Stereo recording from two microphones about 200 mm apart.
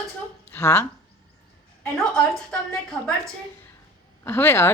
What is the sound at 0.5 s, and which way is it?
Speech, 10° left (ahead or behind).